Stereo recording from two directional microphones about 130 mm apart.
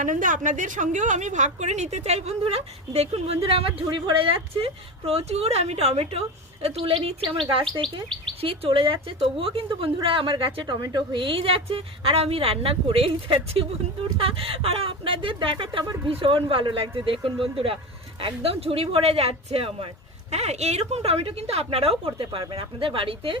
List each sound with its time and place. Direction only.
0.0 s a woman's voice: 85° right; by 7.2 s 50° right (ahead or behind)
7.8 s chirp: 5° left (ahead or behind)
8.4 s a woman's voice: 45° right (ahead or behind)